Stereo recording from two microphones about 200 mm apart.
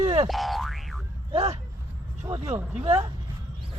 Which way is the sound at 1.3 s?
30° right (ahead or behind).